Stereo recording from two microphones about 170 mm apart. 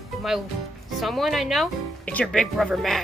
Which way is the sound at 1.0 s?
Centre (ahead or behind).